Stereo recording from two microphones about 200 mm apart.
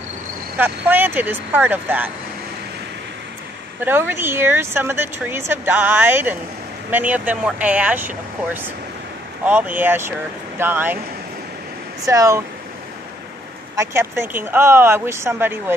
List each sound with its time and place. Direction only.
0.6 s speech: 10° right (ahead or behind)
3.8 s speech: 10° right (ahead or behind)
9.5 s speech: 10° right (ahead or behind)
12.0 s speech: 15° right (ahead or behind)
13.7 s speech: 10° right (ahead or behind)